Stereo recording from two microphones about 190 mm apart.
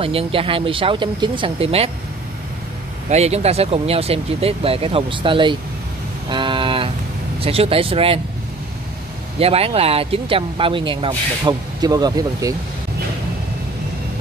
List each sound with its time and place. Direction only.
0.0 s speech: 30° right (ahead or behind)
3.1 s speech: 35° right (ahead or behind)
6.2 s a sound: 25° right (ahead or behind)
7.3 s speech: 30° right (ahead or behind)
9.4 s speech: 30° right (ahead or behind)